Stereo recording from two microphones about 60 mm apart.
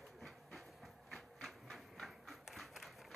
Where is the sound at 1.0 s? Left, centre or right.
Centre.